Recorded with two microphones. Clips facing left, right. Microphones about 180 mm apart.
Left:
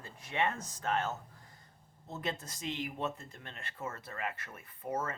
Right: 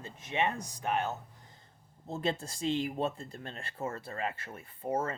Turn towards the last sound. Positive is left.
turn(degrees=-30)  # may be behind; listen again after turning